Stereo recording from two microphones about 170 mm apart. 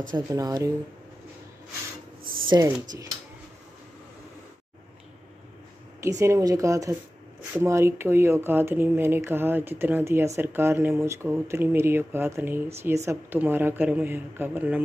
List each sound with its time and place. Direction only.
0.1 s speech: 20° right (ahead or behind)
2.5 s speech: 20° right (ahead or behind)
5.9 s speech: 15° right (ahead or behind)